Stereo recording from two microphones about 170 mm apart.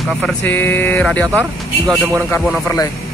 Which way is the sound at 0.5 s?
10° left (ahead or behind).